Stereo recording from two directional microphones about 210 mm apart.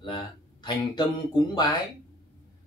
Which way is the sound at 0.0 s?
20° left (ahead or behind).